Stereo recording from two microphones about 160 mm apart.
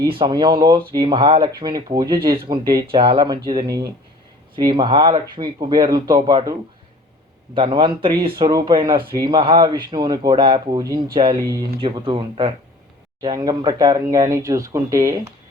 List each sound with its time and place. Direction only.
0.0 s speech: 30° right (ahead or behind)